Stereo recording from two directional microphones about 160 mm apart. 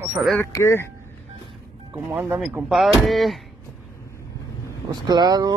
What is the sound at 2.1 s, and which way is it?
Speech, 10° right (ahead or behind).